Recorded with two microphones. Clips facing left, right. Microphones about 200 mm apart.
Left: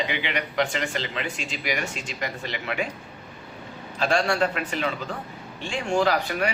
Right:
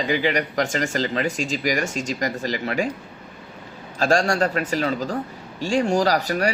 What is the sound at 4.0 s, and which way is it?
A man's voice, 45° right (ahead or behind).